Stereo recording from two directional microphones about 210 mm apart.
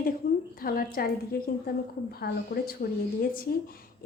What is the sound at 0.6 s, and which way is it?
A woman's voice, 45° left (ahead or behind).